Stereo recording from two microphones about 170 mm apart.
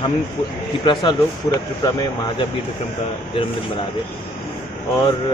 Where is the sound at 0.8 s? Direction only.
25° left (ahead or behind).